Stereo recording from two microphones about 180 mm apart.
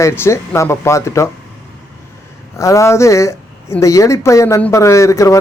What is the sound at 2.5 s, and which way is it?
Speech, 15° left (ahead or behind).